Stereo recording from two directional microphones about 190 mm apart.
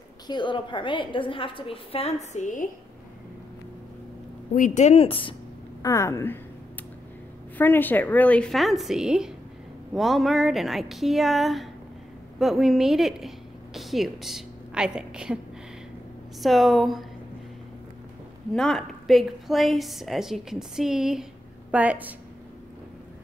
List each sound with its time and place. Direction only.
0.3 s a woman's voice: 25° left (ahead or behind); by 2.7 s 40° left (ahead or behind)
4.6 s speech: 40° left (ahead or behind)
5.8 s a woman's voice: 15° left (ahead or behind)
7.5 s a woman's voice: 10° left (ahead or behind)
13.7 s a sound: centre (ahead or behind)
16.3 s a woman's voice: centre (ahead or behind)
18.5 s a woman's voice: centre (ahead or behind)